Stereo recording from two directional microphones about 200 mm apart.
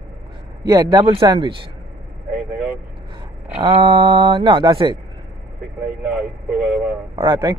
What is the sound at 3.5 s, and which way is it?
Speech, 25° right (ahead or behind).